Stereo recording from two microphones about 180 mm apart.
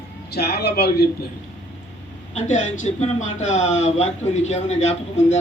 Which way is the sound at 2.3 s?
40° left (ahead or behind).